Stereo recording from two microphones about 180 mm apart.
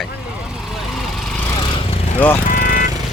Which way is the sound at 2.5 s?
50° left (ahead or behind).